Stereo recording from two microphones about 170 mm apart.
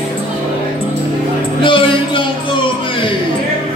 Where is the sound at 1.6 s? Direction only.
30° left (ahead or behind).